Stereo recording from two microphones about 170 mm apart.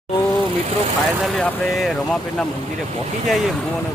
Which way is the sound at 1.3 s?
5° left (ahead or behind).